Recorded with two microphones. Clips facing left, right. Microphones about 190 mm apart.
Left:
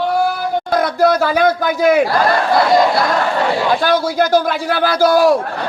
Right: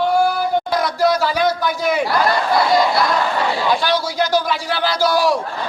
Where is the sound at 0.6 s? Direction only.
55° left (ahead or behind).